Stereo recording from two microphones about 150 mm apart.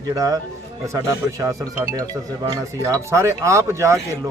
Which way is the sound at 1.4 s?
20° right (ahead or behind).